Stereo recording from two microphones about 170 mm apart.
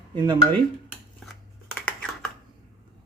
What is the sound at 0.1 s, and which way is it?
Speech, 25° right (ahead or behind).